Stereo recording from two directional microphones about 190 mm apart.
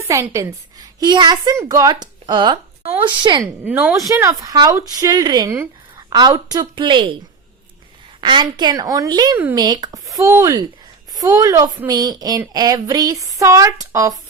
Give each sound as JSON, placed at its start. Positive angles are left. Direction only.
{"t": 0.1, "sound": "a woman's voice", "side_deg": -15}
{"t": 3.6, "sound": "a woman's voice", "side_deg": -10}
{"t": 8.2, "sound": "a woman's voice", "side_deg": -25}
{"t": 9.4, "sound": "a woman's voice", "side_deg": -10}